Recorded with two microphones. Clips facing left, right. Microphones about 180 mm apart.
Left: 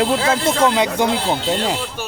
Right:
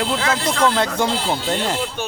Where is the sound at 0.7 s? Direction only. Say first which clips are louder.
Left 2 dB; 15° left (ahead or behind).